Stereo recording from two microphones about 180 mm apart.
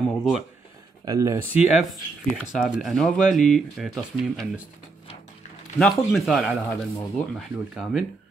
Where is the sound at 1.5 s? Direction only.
5° right (ahead or behind).